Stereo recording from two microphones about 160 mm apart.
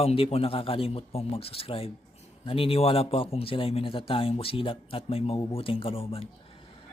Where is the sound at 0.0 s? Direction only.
40° left (ahead or behind).